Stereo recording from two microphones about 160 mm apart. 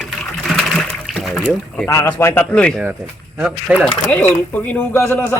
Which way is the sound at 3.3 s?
5° right (ahead or behind).